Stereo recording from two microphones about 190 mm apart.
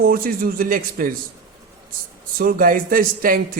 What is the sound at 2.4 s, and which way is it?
A man's voice, 50° right (ahead or behind).